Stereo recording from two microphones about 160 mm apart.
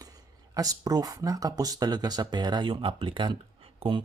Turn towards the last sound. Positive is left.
turn(degrees=-35)  # may be behind; listen again after turning